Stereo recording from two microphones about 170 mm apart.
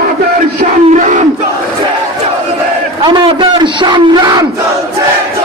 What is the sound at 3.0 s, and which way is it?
A man's voice, 30° right (ahead or behind).